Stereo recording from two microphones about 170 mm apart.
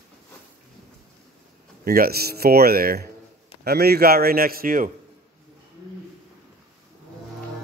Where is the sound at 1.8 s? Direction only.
60° right (ahead or behind).